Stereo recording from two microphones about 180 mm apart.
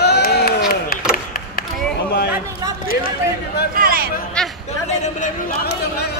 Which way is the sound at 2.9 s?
55° left (ahead or behind).